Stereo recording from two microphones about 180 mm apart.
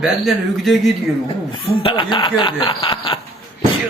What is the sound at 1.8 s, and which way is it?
Speech, 25° left (ahead or behind).